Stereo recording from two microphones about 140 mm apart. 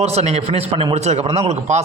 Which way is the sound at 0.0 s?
50° right (ahead or behind).